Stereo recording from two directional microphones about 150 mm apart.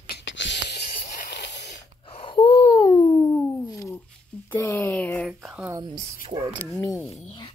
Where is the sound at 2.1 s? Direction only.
35° left (ahead or behind).